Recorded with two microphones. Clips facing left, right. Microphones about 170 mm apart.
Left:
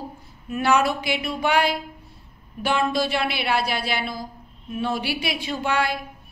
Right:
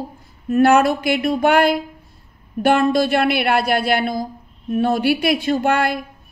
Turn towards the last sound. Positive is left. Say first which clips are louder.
# right 6 dB
turn(degrees=-50)  # may be behind; listen again after turning